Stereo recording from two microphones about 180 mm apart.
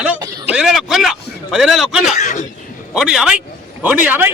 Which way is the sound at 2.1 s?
45° left (ahead or behind).